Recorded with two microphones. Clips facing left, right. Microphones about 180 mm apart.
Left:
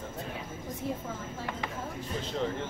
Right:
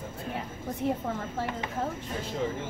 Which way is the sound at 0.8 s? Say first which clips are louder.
Right 6 dB; 70° right (ahead or behind).